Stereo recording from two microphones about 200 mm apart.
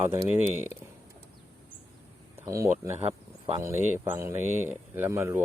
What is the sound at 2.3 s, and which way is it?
Speech, 15° right (ahead or behind).